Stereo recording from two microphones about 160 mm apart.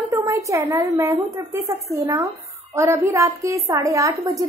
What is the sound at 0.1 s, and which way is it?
A woman's voice, 20° right (ahead or behind).